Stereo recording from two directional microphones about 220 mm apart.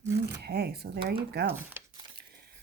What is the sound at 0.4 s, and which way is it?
A woman's voice, 45° right (ahead or behind).